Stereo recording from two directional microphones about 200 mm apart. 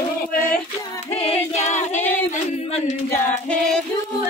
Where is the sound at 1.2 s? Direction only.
35° left (ahead or behind).